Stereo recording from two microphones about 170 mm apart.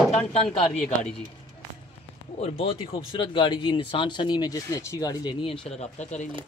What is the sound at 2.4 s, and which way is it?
Speech, 35° left (ahead or behind).